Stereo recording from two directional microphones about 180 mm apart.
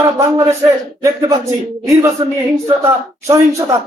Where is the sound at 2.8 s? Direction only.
15° right (ahead or behind).